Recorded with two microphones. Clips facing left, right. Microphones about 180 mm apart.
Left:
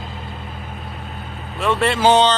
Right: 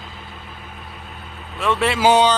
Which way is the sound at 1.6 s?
Centre (ahead or behind).